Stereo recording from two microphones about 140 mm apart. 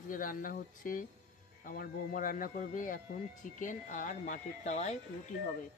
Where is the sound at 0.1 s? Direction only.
80° left; by 4.9 s 55° left (ahead or behind).